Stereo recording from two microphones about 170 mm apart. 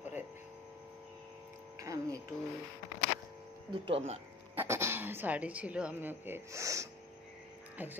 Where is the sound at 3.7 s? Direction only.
30° right (ahead or behind).